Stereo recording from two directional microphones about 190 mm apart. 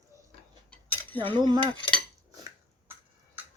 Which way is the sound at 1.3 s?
25° right (ahead or behind).